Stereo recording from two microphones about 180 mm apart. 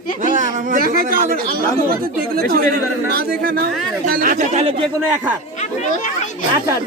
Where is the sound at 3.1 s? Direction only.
60° right (ahead or behind).